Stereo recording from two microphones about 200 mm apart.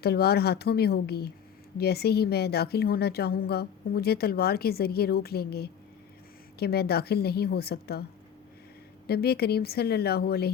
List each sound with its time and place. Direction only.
0.0 s a woman's voice: 50° left (ahead or behind)
9.0 s a woman's voice: 50° left (ahead or behind)